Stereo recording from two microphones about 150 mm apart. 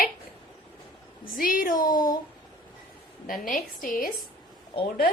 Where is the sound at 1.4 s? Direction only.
70° left (ahead or behind).